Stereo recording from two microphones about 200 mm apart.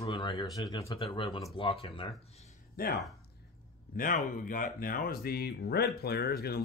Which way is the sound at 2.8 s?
45° left (ahead or behind).